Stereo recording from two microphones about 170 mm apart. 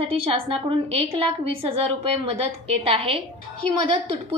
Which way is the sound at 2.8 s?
35° right (ahead or behind).